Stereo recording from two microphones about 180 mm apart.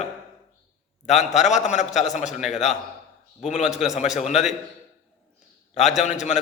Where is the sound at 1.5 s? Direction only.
40° left (ahead or behind).